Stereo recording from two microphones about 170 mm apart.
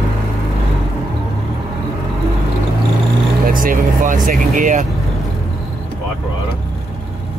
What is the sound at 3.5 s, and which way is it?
Speech, 55° right (ahead or behind).